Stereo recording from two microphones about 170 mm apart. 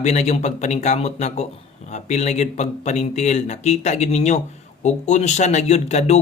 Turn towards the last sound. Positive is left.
turn(degrees=40)  # may be behind; listen again after turning